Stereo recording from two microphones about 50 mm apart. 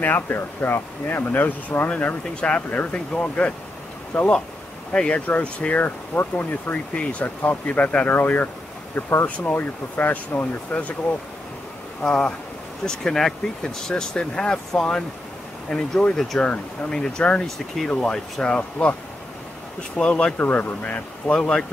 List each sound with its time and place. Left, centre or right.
0.0 s speech: left; by 5.2 s centre
5.2 s speech: left
7.0 s speech: left
8.1 s speech: left
10.3 s speech: left
12.0 s speech: centre
20.0 s speech: left
20.3 s speech: left